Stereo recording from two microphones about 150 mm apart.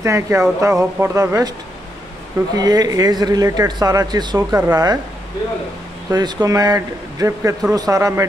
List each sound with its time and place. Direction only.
0.0 s speech: 20° right (ahead or behind)
2.5 s speech: 25° right (ahead or behind)
6.0 s speech: 25° right (ahead or behind)